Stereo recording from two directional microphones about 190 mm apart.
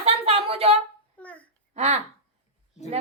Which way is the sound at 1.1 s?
5° left (ahead or behind).